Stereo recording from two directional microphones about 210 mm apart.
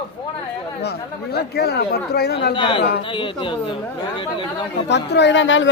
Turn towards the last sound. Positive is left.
turn(degrees=60)  # may be behind; listen again after turning